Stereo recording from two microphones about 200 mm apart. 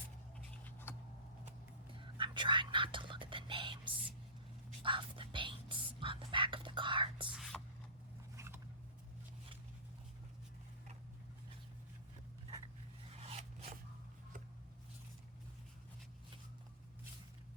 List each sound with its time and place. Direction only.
0.6 s a sound: 10° left (ahead or behind)
2.0 s whispering: 25° right (ahead or behind)
4.8 s speech: 25° right (ahead or behind)
7.3 s speech: centre (ahead or behind)
8.4 s zipper: 10° right (ahead or behind)
13.1 s a sound: 30° right (ahead or behind)